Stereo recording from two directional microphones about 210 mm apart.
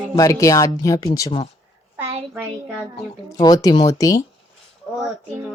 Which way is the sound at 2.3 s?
5° right (ahead or behind).